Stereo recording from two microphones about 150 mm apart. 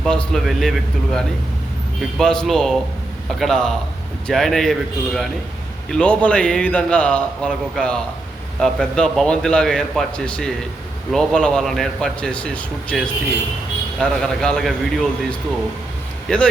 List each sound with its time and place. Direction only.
0.0 s a man's voice: 5° left (ahead or behind)